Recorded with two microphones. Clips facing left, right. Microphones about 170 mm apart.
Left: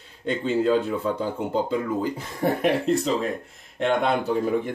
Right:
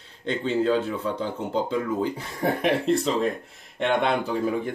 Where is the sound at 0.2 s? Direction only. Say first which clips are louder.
Left 1 dB; 5° left (ahead or behind).